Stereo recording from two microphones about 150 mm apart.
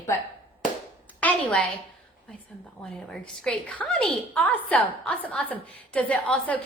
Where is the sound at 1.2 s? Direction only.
10° left (ahead or behind).